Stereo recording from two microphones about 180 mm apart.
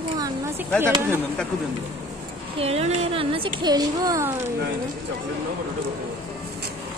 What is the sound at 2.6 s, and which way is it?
Speech, 35° right (ahead or behind).